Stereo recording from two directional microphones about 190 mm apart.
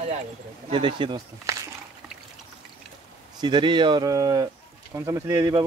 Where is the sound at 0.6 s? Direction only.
25° right (ahead or behind).